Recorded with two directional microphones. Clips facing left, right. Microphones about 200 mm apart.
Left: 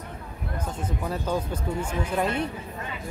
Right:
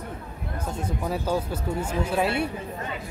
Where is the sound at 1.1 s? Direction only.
10° right (ahead or behind).